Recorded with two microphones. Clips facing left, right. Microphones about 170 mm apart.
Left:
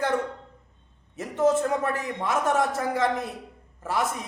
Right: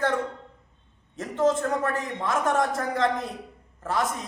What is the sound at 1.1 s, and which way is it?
A man's voice, 10° left (ahead or behind).